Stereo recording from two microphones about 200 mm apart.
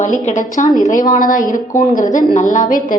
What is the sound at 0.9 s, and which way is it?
A woman's voice, 40° left (ahead or behind).